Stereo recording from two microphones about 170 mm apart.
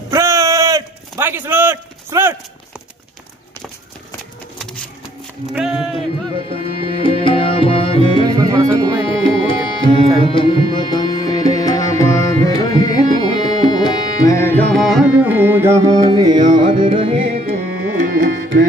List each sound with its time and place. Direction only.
0.1 s a sound: 15° right (ahead or behind)
5.5 s speech: 5° right (ahead or behind)
6.5 s tabla: 35° left (ahead or behind)
8.3 s music: 20° right (ahead or behind)
9.0 s music: 30° left (ahead or behind)
10.2 s tabla: 30° left (ahead or behind); by 15.0 s centre (ahead or behind)
15.2 s music: 10° right (ahead or behind); by 17.6 s 35° right (ahead or behind)
18.0 s tabla: 65° right (ahead or behind); by 18.7 s 80° right